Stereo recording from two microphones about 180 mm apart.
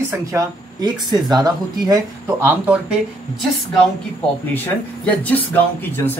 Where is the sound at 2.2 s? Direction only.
5° right (ahead or behind).